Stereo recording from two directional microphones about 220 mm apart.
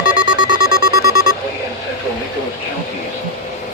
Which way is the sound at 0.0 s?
40° left (ahead or behind).